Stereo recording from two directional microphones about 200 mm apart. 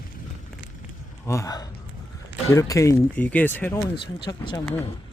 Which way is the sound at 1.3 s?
15° left (ahead or behind).